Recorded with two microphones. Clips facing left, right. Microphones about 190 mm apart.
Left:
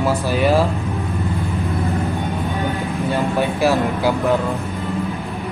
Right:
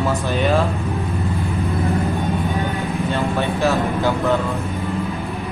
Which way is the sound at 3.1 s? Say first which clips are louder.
Left 3 dB; 15° left (ahead or behind).